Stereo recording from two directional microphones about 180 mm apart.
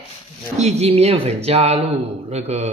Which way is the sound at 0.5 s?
40° right (ahead or behind).